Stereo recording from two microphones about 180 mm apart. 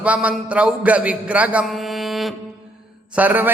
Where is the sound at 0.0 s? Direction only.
5° right (ahead or behind).